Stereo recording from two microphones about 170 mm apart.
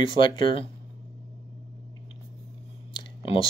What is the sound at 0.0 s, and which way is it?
Speech, 30° left (ahead or behind).